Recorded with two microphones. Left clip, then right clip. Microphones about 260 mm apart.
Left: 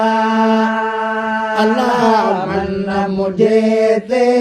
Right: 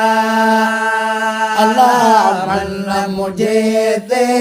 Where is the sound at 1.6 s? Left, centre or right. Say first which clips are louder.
Right 5 dB; right.